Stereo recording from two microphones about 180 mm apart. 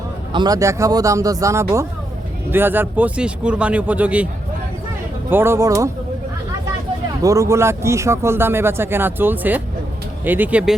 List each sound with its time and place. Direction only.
0.3 s speech: 20° right (ahead or behind)
5.3 s speech: 15° right (ahead or behind)
7.2 s speech: 20° right (ahead or behind)